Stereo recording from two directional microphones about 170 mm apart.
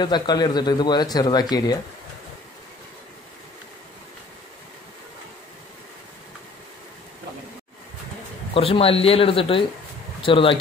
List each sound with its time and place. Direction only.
0.0 s speech: 25° left (ahead or behind)
8.5 s speech: 35° left (ahead or behind)